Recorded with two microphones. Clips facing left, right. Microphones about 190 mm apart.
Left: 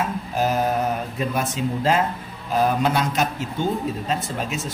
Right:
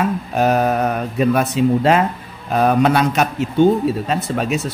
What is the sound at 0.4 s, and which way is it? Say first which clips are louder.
A man's voice: right 5 dB; 65° right (ahead or behind).